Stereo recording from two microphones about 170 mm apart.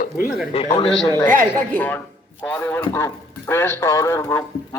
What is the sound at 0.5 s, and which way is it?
Speech, 35° left (ahead or behind).